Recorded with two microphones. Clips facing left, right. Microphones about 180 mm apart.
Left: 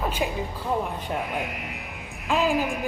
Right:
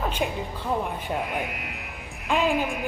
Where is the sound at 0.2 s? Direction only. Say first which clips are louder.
Even; centre (ahead or behind).